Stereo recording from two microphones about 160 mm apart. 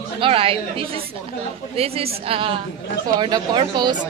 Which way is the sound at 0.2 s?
35° right (ahead or behind).